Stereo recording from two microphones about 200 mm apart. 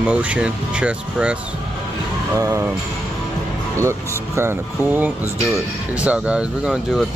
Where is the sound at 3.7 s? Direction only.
15° right (ahead or behind).